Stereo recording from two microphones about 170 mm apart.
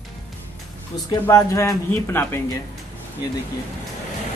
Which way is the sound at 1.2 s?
15° left (ahead or behind).